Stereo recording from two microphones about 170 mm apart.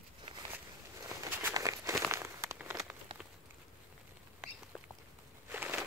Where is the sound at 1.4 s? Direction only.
20° right (ahead or behind).